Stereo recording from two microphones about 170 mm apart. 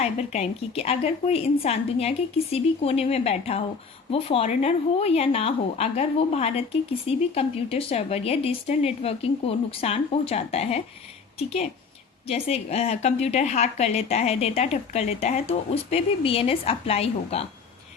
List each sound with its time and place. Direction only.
0.0 s a woman's voice: 40° left (ahead or behind)
12.3 s a woman's voice: 40° left (ahead or behind)